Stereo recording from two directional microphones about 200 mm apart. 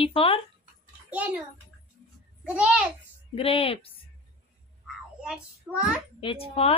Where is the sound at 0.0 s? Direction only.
30° left (ahead or behind).